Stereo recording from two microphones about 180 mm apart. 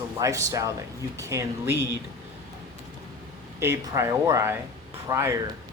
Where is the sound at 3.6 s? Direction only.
15° right (ahead or behind).